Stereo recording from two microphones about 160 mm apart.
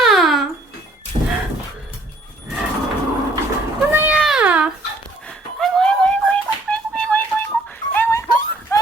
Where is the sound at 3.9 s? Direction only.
15° right (ahead or behind).